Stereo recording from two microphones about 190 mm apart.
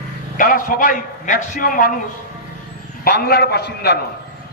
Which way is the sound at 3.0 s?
55° left (ahead or behind).